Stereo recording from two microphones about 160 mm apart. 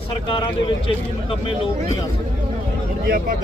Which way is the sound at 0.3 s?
30° left (ahead or behind).